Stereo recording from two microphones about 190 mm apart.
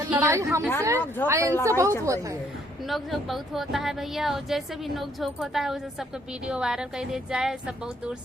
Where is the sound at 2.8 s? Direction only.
Centre (ahead or behind).